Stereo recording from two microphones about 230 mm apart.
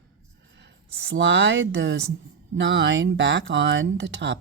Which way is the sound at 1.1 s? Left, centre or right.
Right.